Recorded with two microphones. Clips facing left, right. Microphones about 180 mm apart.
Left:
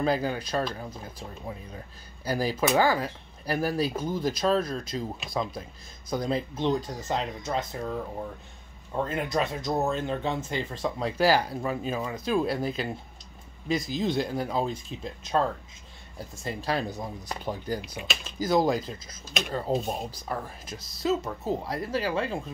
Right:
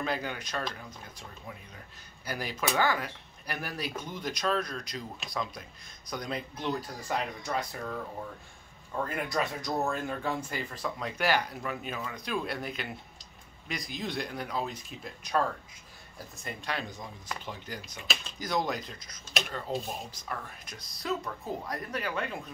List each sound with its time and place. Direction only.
0.0 s speech: 35° left (ahead or behind)
2.2 s speech: 35° left (ahead or behind)
8.9 s speech: 25° left (ahead or behind)